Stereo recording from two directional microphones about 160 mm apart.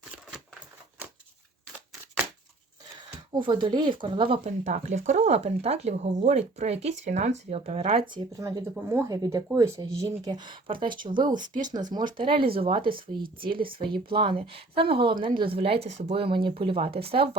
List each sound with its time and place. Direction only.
3.3 s a woman's voice: 30° right (ahead or behind)
4.4 s a woman's voice: 45° right (ahead or behind)